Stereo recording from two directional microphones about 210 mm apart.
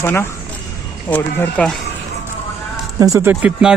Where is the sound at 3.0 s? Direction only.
10° right (ahead or behind).